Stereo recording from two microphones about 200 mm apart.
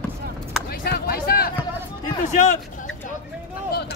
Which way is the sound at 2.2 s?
40° left (ahead or behind).